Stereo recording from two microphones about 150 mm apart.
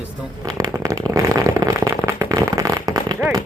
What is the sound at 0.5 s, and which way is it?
Firecracker, 20° right (ahead or behind).